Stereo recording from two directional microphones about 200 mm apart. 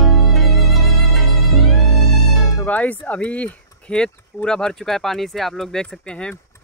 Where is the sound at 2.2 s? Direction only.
5° left (ahead or behind).